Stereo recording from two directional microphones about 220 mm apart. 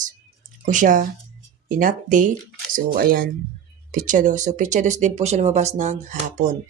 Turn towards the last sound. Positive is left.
turn(degrees=-35)  # may be behind; listen again after turning